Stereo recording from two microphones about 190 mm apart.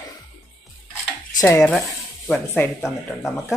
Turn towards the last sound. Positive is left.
turn(degrees=15)  # may be behind; listen again after turning